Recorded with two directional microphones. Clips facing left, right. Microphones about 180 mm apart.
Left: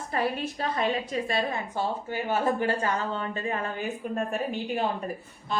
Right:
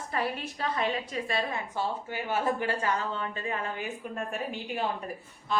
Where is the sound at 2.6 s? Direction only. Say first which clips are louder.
Left 3 dB; 40° left (ahead or behind).